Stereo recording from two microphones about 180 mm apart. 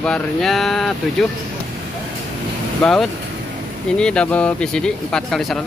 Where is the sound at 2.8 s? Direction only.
Centre (ahead or behind).